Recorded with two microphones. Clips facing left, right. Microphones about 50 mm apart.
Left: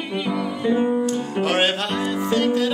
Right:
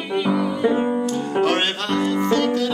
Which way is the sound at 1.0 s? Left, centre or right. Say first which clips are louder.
Right 2 dB; centre.